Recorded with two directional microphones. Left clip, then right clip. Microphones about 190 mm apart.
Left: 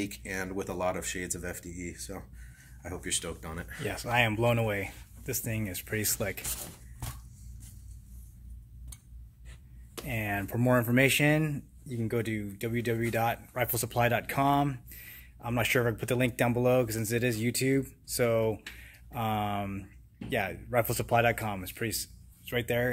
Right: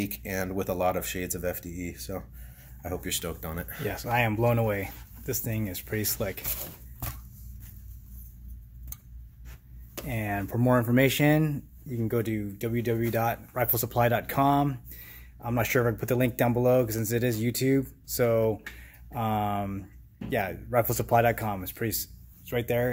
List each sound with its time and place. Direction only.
0.0 s speech: 55° right (ahead or behind)
3.8 s speech: 5° right (ahead or behind)
10.0 s speech: 5° right (ahead or behind)